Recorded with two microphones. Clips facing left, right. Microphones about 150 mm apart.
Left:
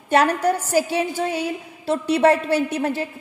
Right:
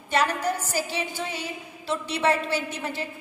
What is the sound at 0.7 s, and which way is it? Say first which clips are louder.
A woman's voice: left 9 dB; 50° left (ahead or behind).